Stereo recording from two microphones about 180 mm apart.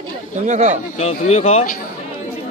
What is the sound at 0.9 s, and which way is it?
Speech, 35° left (ahead or behind).